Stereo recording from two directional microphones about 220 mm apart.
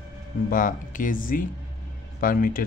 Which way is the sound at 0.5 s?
35° left (ahead or behind).